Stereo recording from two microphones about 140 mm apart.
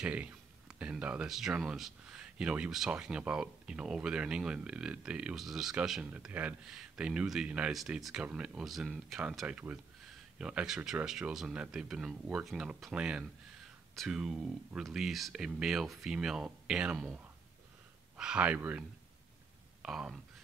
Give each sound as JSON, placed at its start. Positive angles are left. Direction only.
{"t": 0.0, "sound": "speech", "side_deg": -10}